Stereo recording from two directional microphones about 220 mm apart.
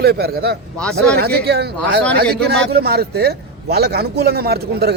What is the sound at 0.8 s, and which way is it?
Speech, 5° left (ahead or behind).